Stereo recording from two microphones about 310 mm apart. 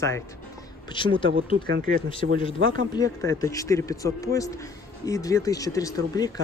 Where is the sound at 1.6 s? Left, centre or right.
Right.